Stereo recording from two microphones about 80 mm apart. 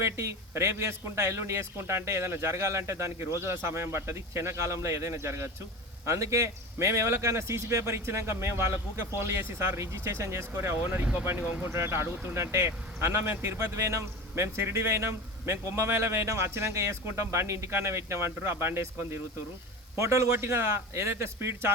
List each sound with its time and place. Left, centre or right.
0.0 s speech: right
11.0 s speech: right
11.3 s speech: right